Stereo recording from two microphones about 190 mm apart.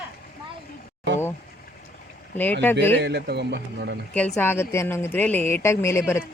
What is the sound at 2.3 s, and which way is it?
Speech, 10° left (ahead or behind).